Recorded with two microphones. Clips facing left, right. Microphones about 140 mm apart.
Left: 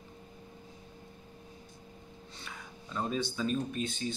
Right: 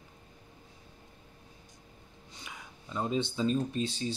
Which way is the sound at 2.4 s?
15° right (ahead or behind).